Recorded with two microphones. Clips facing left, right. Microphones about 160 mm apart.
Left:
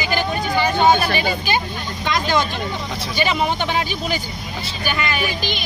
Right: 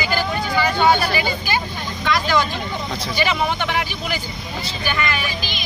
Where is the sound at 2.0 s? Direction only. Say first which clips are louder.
Even; 20° left (ahead or behind).